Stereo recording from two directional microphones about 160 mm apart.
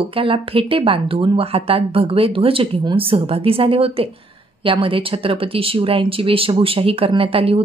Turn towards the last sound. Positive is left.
turn(degrees=-35)  # may be behind; listen again after turning